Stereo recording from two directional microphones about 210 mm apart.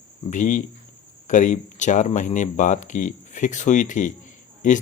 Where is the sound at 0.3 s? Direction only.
35° left (ahead or behind).